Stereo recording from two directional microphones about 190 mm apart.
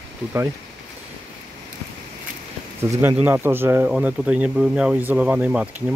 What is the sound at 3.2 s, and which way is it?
Speech, 10° right (ahead or behind).